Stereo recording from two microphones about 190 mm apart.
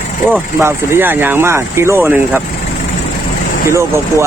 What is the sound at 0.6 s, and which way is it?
Speech, 10° right (ahead or behind).